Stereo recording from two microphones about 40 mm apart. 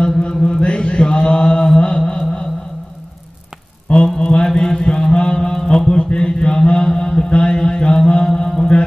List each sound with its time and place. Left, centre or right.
0.2 s mantra: left
3.9 s mantra: left
8.4 s music: centre